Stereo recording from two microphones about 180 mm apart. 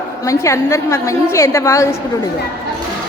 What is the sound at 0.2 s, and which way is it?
A woman's voice, 15° left (ahead or behind).